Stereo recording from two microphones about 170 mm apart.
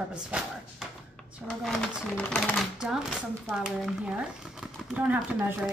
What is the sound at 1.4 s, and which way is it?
A woman's voice, 5° left (ahead or behind).